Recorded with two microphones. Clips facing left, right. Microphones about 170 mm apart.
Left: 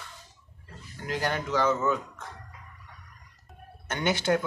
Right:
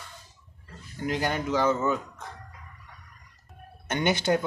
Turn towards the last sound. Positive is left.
turn(degrees=-20)  # may be behind; listen again after turning